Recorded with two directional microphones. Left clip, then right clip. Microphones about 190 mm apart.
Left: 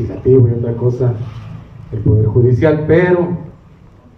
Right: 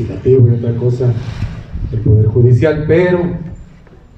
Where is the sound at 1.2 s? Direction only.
55° right (ahead or behind).